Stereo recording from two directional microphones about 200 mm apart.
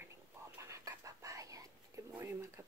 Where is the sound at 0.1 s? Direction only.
15° right (ahead or behind).